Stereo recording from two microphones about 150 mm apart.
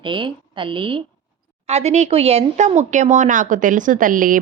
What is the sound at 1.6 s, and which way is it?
A woman's voice, 45° right (ahead or behind).